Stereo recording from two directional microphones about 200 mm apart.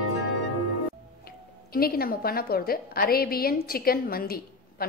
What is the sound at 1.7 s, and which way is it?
A woman's voice, 50° left (ahead or behind).